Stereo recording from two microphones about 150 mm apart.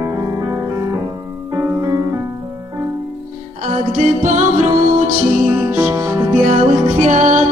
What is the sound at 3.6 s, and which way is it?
Music, 60° right (ahead or behind).